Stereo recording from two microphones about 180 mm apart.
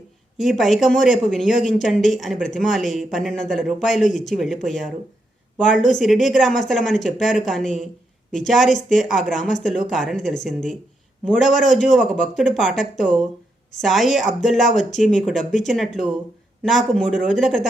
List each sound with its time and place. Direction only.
0.3 s speech: centre (ahead or behind)
9.4 s speech: 45° left (ahead or behind)
9.6 s speech: centre (ahead or behind)